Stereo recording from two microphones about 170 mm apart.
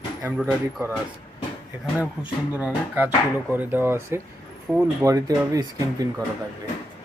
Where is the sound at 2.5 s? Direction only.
10° right (ahead or behind).